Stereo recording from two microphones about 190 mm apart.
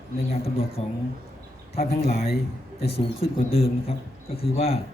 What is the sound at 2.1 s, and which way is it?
A man's voice, 35° left (ahead or behind).